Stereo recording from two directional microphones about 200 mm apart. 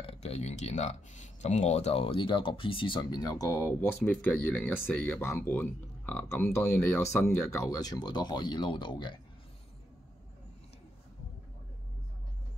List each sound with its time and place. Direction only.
0.0 s speech: 30° left (ahead or behind)